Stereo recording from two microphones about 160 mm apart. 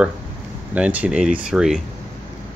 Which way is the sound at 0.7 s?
5° right (ahead or behind).